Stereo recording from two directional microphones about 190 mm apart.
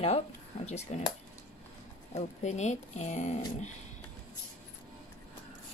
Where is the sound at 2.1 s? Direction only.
35° left (ahead or behind).